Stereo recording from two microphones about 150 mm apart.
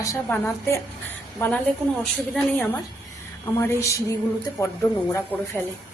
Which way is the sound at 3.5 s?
20° left (ahead or behind).